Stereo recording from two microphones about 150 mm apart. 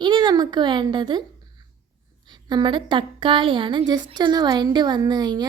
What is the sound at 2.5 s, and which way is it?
A woman's voice, 30° right (ahead or behind).